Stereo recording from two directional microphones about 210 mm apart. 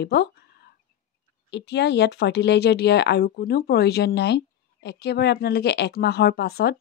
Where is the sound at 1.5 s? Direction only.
55° left (ahead or behind).